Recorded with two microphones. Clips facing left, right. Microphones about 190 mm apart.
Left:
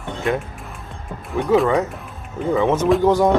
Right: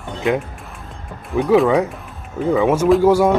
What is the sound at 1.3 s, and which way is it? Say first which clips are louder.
Speech: right 3 dB; centre (ahead or behind).